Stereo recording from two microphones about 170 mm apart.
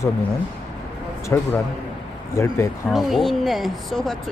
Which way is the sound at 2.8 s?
Centre (ahead or behind).